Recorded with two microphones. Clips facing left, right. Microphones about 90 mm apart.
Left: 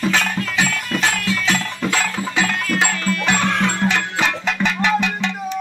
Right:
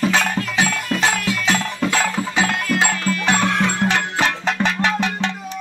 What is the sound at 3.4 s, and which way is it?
Music, 5° right (ahead or behind).